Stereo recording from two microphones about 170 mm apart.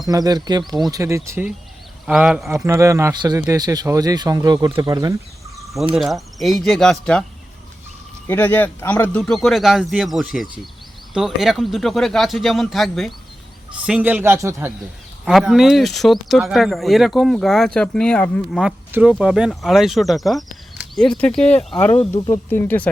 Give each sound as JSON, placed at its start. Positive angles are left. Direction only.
{"t": 0.0, "sound": "a man's voice", "side_deg": -20}
{"t": 2.0, "sound": "speech", "side_deg": -5}
{"t": 2.6, "sound": "speech", "side_deg": -15}
{"t": 5.9, "sound": "speech", "side_deg": 0}
{"t": 8.3, "sound": "a man's voice", "side_deg": 10}
{"t": 15.2, "sound": "speech", "side_deg": -5}
{"t": 18.6, "sound": "speech", "side_deg": -10}